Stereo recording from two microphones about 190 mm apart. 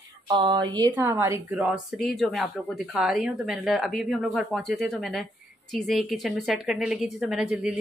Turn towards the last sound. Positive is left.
turn(degrees=-5)  # may be behind; listen again after turning